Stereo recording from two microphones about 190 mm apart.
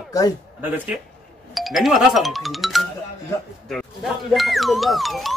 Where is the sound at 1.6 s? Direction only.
Centre (ahead or behind).